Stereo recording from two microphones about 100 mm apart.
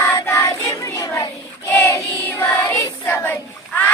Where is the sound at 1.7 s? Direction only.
30° left (ahead or behind).